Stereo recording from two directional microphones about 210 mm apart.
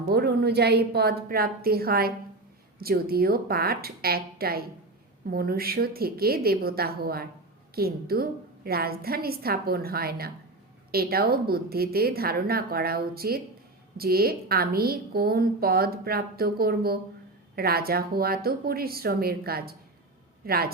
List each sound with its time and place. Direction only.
0.0 s a woman's voice: 50° right (ahead or behind)